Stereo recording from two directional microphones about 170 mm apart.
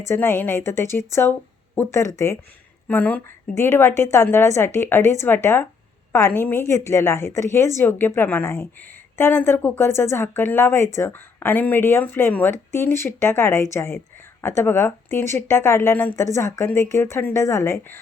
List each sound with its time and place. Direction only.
0.0 s a woman's voice: 15° left (ahead or behind)